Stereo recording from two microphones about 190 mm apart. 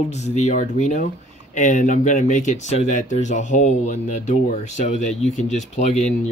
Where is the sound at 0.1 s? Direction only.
35° left (ahead or behind).